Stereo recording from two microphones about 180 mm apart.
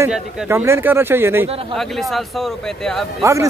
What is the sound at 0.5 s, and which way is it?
Speech, 15° right (ahead or behind).